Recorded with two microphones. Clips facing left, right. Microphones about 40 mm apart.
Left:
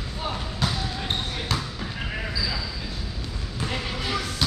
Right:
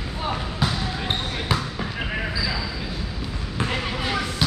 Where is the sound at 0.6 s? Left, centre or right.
Centre.